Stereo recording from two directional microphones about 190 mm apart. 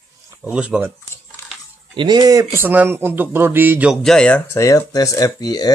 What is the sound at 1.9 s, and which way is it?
Speech, 20° right (ahead or behind).